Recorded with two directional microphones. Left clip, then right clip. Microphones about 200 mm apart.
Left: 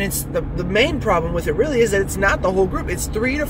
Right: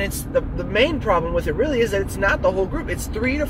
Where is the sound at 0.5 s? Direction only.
20° left (ahead or behind).